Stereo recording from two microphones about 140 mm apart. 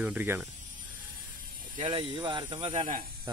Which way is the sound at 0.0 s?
10° right (ahead or behind).